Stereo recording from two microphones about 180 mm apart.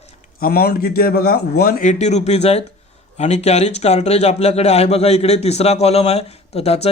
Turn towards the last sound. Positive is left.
turn(degrees=35)  # may be behind; listen again after turning